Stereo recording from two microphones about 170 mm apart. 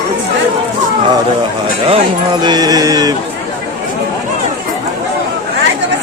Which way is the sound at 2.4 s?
25° right (ahead or behind).